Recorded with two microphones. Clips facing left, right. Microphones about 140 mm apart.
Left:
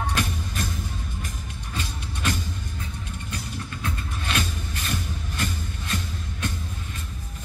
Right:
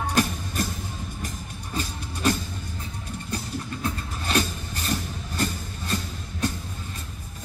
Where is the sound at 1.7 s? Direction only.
40° right (ahead or behind).